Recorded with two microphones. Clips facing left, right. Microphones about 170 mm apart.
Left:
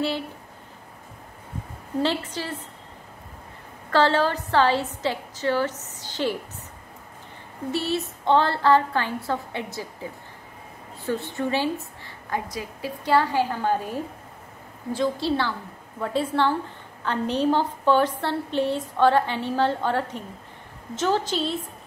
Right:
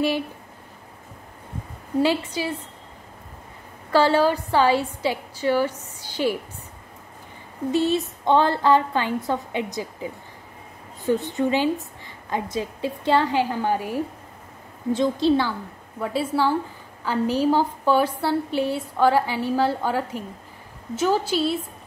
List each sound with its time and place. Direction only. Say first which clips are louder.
2.0 s a woman's voice: right 4 dB; 10° right (ahead or behind)
3.9 s a woman's voice: right 2 dB; 10° right (ahead or behind)
7.7 s a woman's voice: right 5 dB; 15° right (ahead or behind)
11.1 s a woman's voice: right 5 dB; 15° right (ahead or behind)